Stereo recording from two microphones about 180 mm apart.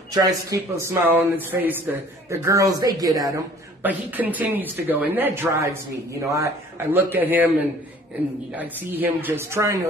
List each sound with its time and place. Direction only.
0.1 s speech: 15° right (ahead or behind)
3.8 s speech: 10° right (ahead or behind)
8.5 s speech: 10° right (ahead or behind)